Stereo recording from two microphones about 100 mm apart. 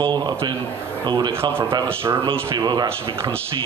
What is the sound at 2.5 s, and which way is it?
Speech, 45° right (ahead or behind).